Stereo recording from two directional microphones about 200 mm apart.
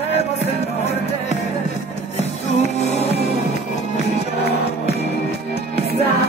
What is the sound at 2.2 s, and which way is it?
Music, 35° left (ahead or behind).